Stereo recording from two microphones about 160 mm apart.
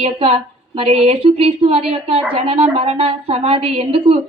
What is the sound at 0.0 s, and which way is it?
A woman's voice, 40° right (ahead or behind).